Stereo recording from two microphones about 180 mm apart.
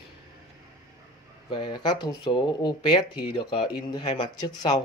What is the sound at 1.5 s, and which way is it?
Speech, 25° left (ahead or behind).